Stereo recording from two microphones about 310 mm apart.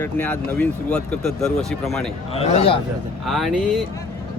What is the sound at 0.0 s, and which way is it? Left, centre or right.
Speech, centre.